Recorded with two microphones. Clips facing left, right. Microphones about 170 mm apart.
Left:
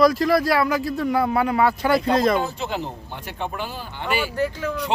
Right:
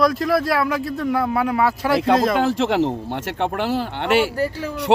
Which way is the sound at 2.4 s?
90° right.